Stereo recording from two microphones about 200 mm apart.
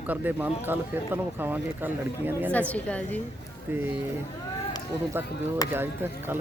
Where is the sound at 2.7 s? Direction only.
5° left (ahead or behind).